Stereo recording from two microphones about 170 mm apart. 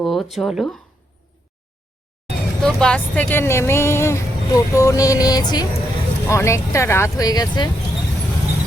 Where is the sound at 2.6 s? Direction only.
5° left (ahead or behind).